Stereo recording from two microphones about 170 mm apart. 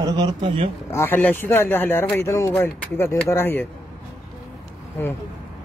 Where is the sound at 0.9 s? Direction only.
10° left (ahead or behind).